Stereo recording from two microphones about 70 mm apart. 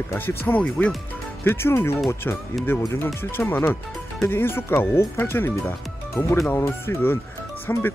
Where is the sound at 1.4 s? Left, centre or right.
Left.